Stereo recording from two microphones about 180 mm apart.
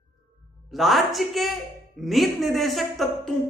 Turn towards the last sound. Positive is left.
turn(degrees=0)  # may be behind; listen again after turning